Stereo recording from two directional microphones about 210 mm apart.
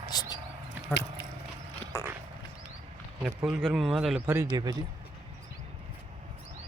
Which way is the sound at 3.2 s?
Centre (ahead or behind).